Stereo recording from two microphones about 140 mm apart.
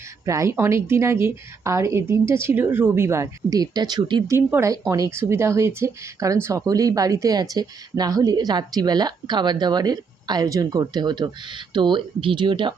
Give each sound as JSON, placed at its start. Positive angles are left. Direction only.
{"t": 0.3, "sound": "speech", "side_deg": -20}
{"t": 4.4, "sound": "speech", "side_deg": -20}